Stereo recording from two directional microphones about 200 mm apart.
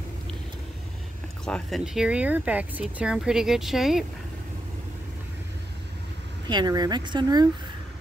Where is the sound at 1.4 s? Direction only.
Centre (ahead or behind).